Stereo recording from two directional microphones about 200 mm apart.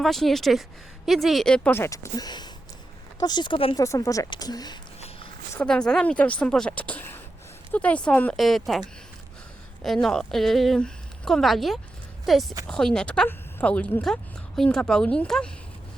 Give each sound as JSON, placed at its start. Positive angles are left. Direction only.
{"t": 0.0, "sound": "a woman's voice", "side_deg": 0}
{"t": 4.9, "sound": "a sound", "side_deg": 30}
{"t": 5.5, "sound": "speech", "side_deg": 5}
{"t": 9.8, "sound": "speech", "side_deg": 0}